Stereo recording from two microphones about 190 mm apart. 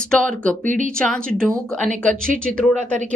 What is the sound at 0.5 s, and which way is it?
Speech, 40° right (ahead or behind).